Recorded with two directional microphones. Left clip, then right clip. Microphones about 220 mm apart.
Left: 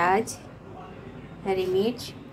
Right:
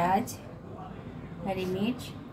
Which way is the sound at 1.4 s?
20° left (ahead or behind).